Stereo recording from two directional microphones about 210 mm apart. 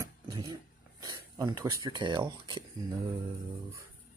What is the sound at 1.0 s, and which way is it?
Speech, 20° right (ahead or behind).